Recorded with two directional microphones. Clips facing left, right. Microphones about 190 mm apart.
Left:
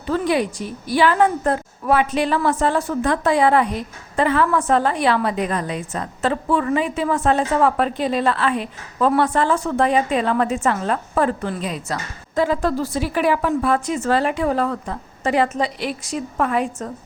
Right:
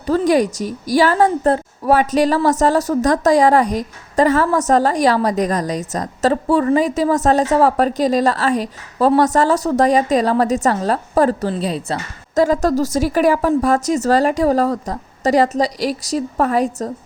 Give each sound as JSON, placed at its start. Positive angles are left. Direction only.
{"t": 0.0, "sound": "a woman's voice", "side_deg": -40}